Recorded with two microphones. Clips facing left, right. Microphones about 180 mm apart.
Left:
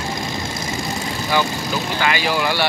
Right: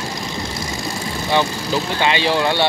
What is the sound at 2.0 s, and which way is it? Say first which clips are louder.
Speech: right 2 dB; 25° right (ahead or behind).